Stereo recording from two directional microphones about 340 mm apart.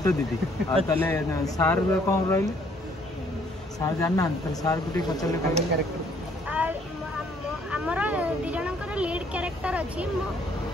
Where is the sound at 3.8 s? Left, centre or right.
Centre.